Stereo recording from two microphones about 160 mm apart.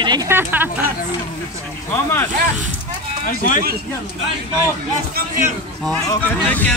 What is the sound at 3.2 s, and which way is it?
Speech, 60° left (ahead or behind).